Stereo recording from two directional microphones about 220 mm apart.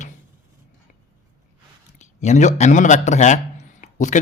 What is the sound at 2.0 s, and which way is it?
A man's voice, 30° left (ahead or behind).